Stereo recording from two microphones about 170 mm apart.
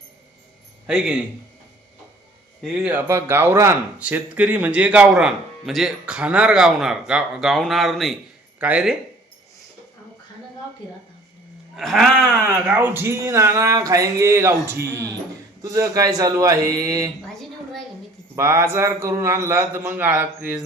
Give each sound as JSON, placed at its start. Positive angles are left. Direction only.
{"t": 0.9, "sound": "a man's voice", "side_deg": -5}
{"t": 2.8, "sound": "speech", "side_deg": -15}
{"t": 11.8, "sound": "speech", "side_deg": 0}
{"t": 12.5, "sound": "a man's voice", "side_deg": -10}
{"t": 17.2, "sound": "a sound", "side_deg": 0}
{"t": 18.3, "sound": "speech", "side_deg": -15}